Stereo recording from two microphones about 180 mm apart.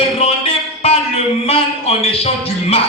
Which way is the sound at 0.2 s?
35° left (ahead or behind).